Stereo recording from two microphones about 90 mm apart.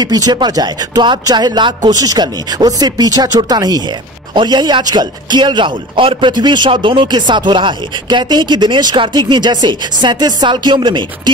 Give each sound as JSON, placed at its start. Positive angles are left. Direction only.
{"t": 0.0, "sound": "speech", "side_deg": -45}
{"t": 6.3, "sound": "speech", "side_deg": -55}